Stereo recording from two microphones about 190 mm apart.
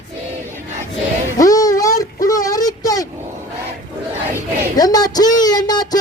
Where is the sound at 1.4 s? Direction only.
20° left (ahead or behind).